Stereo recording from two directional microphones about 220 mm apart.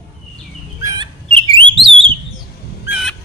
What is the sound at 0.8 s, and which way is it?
Bird, 20° right (ahead or behind).